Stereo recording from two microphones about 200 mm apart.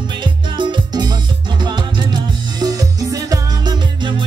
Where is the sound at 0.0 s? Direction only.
25° right (ahead or behind).